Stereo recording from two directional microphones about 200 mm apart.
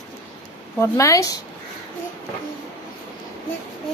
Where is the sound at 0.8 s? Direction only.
15° left (ahead or behind).